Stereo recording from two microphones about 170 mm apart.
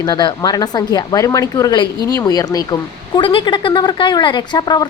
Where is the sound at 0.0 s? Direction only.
25° left (ahead or behind).